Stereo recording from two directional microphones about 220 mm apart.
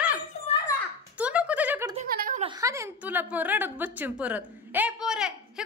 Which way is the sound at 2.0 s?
40° right (ahead or behind).